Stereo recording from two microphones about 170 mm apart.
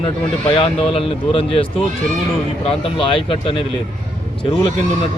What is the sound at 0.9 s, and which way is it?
Speech, 35° left (ahead or behind).